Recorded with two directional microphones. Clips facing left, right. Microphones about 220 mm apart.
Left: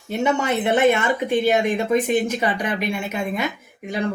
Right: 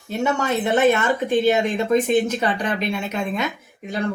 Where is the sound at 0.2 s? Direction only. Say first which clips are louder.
Left 1 dB; 15° left (ahead or behind).